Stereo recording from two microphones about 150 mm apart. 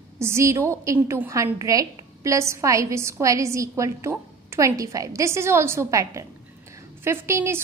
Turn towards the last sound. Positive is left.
turn(degrees=-15)  # may be behind; listen again after turning